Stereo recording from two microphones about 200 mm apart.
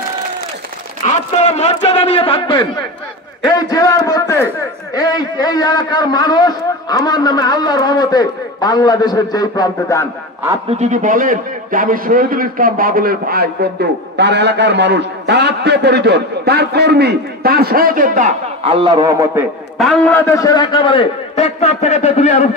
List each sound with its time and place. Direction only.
1.0 s a man's voice: 30° left (ahead or behind)
10.8 s a man's voice: 40° right (ahead or behind)
18.6 s a man's voice: 25° right (ahead or behind)
19.8 s a man's voice: 5° left (ahead or behind); by 22.5 s 35° left (ahead or behind)